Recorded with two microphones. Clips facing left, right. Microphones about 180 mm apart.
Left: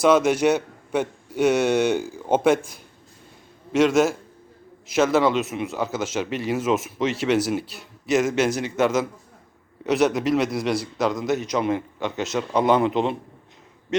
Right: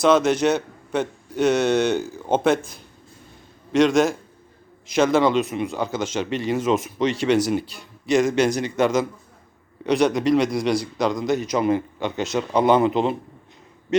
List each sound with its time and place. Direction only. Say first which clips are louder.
0.0 s a man's voice: even; 10° left (ahead or behind)